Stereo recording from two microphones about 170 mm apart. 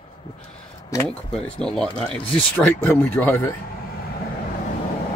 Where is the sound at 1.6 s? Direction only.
5° left (ahead or behind).